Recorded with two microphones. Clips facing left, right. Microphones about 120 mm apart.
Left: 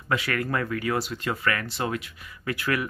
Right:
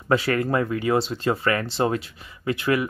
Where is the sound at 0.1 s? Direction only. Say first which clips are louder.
Right 6 dB; 30° right (ahead or behind).